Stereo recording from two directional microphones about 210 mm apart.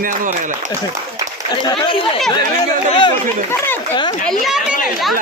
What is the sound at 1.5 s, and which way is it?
Speech, 20° left (ahead or behind).